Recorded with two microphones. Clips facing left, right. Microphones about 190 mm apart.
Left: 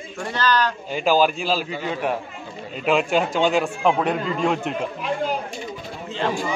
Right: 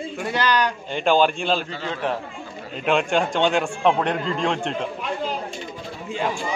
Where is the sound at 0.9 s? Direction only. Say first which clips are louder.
Even; 5° left (ahead or behind).